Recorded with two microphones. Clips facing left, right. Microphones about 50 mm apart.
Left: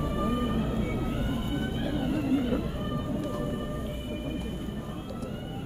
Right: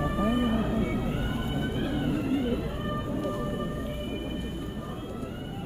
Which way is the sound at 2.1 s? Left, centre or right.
Right.